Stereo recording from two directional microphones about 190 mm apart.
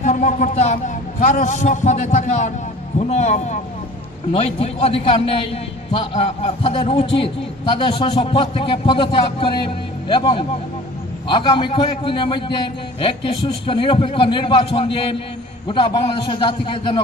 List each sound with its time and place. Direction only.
0.0 s a man's voice: 40° left (ahead or behind)